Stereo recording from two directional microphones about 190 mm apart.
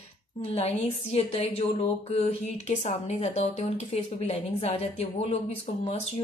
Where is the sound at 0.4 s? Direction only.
30° left (ahead or behind).